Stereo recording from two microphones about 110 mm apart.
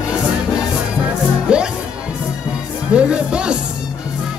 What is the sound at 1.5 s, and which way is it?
Music, 10° right (ahead or behind).